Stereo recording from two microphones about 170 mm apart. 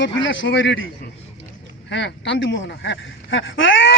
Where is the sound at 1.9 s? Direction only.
90° left.